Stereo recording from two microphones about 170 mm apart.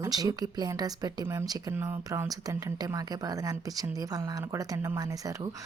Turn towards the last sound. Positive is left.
turn(degrees=-20)  # may be behind; listen again after turning